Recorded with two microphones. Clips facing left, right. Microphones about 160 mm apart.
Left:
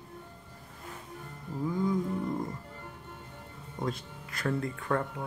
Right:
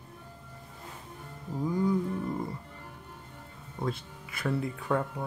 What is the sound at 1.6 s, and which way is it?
Roaring cats, 10° right (ahead or behind).